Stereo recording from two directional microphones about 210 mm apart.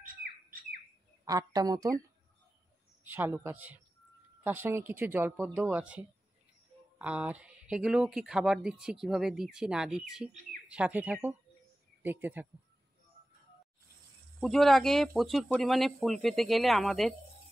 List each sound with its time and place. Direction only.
0.0 s squawk: 40° right (ahead or behind)
1.2 s speech: 15° right (ahead or behind)
3.1 s speech: 10° right (ahead or behind)
14.4 s speech: centre (ahead or behind)